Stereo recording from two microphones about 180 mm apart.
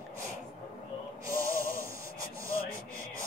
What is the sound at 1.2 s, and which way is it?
Music, 15° right (ahead or behind).